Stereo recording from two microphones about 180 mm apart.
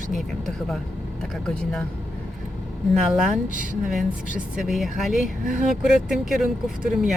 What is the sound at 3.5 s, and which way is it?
Speech, 45° right (ahead or behind).